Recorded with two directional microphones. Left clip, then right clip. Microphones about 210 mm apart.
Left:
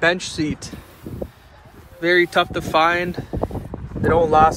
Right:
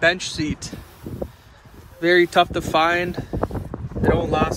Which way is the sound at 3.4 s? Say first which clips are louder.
Even; 25° left (ahead or behind).